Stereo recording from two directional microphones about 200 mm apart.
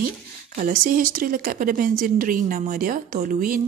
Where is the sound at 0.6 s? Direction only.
45° right (ahead or behind).